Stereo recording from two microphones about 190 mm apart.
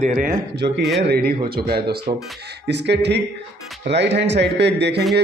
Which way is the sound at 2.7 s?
65° right (ahead or behind).